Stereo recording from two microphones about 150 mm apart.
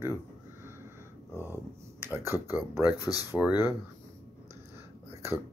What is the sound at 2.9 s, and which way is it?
Speech, 25° left (ahead or behind).